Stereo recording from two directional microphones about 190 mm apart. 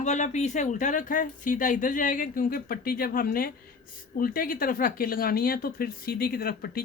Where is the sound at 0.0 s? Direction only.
40° left (ahead or behind).